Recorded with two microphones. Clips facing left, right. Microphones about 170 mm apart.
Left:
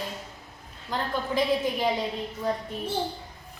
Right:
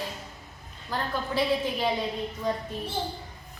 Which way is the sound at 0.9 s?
15° left (ahead or behind).